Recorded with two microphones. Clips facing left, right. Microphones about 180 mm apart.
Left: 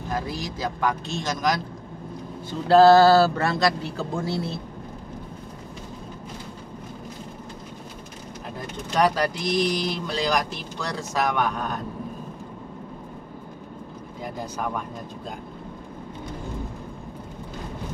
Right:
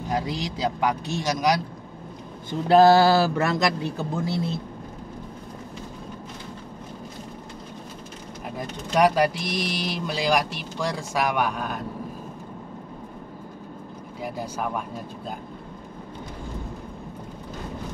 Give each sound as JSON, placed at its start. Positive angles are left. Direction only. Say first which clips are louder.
{"t": 0.1, "sound": "speech", "louder": "right 2 dB", "side_deg": -15}
{"t": 2.7, "sound": "speech", "louder": "left 2 dB", "side_deg": -15}
{"t": 8.9, "sound": "speech", "louder": "right 2 dB", "side_deg": -10}
{"t": 14.2, "sound": "speech", "louder": "right 1 dB", "side_deg": -10}